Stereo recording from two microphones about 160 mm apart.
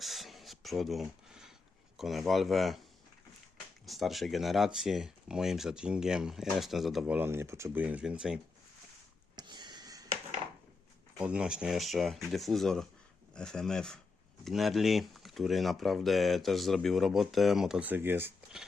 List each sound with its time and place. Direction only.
0.0 s a sound: centre (ahead or behind)
2.0 s speech: centre (ahead or behind)
3.8 s speech: centre (ahead or behind)
7.2 s speech: 15° right (ahead or behind)
9.3 s a sound: 25° right (ahead or behind)
11.2 s speech: 5° right (ahead or behind)